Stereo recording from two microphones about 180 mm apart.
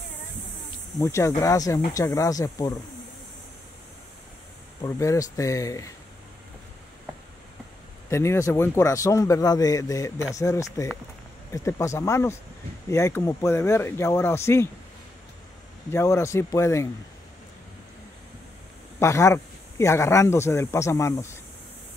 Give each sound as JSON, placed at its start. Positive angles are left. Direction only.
{"t": 0.9, "sound": "a man's voice", "side_deg": 15}
{"t": 4.8, "sound": "a man's voice", "side_deg": 15}
{"t": 8.1, "sound": "a man's voice", "side_deg": 15}
{"t": 15.9, "sound": "a man's voice", "side_deg": 15}
{"t": 18.9, "sound": "a man's voice", "side_deg": 15}